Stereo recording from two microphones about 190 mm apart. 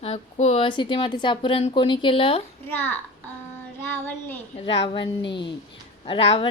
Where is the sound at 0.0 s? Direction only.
35° left (ahead or behind).